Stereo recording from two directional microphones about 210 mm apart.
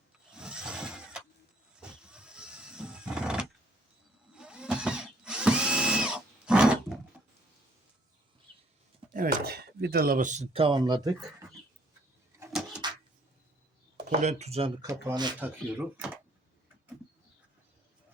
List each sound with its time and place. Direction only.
0.3 s vehicle: 5° right (ahead or behind)
4.4 s drill: 5° right (ahead or behind)
9.1 s speech: 45° right (ahead or behind); by 11.1 s 20° right (ahead or behind)
14.1 s speech: 35° right (ahead or behind)
14.8 s speech: 15° right (ahead or behind)
15.4 s speech: 5° right (ahead or behind)